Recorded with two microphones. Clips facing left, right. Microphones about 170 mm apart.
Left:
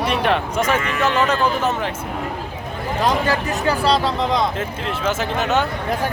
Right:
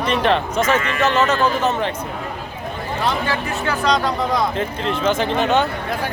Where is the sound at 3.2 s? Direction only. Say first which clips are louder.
Left 3 dB; 35° left (ahead or behind).